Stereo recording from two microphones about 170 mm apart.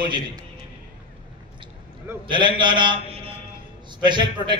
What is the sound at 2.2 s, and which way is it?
A man's voice, 30° right (ahead or behind).